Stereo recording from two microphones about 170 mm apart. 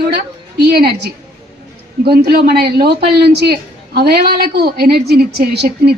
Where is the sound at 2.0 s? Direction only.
65° right (ahead or behind).